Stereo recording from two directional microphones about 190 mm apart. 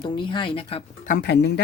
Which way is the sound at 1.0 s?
50° left (ahead or behind).